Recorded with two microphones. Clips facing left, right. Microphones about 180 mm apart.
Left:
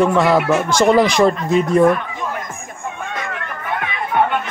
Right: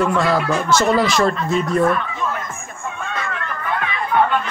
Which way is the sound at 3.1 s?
15° left (ahead or behind).